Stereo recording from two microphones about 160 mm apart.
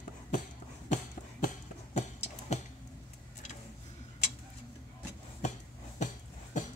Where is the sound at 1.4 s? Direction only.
50° left (ahead or behind).